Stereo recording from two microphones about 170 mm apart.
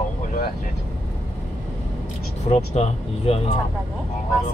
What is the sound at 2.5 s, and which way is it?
Speech, 40° left (ahead or behind).